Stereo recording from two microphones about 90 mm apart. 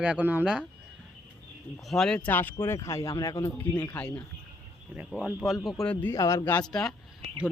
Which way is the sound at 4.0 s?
15° left (ahead or behind).